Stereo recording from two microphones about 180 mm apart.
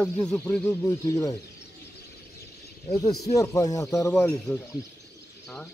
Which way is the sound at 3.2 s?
15° left (ahead or behind).